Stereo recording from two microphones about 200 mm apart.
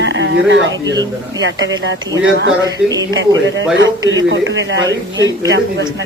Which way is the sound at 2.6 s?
20° right (ahead or behind).